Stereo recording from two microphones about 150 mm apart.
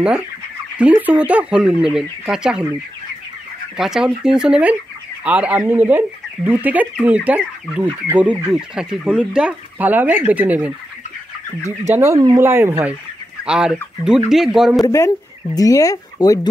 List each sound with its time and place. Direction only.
0.7 s speech: 10° right (ahead or behind)
3.7 s speech: 5° right (ahead or behind)
11.8 s speech: 20° right (ahead or behind)
13.4 s chicken: 5° right (ahead or behind)
14.3 s speech: 5° right (ahead or behind)
14.9 s speech: 20° left (ahead or behind)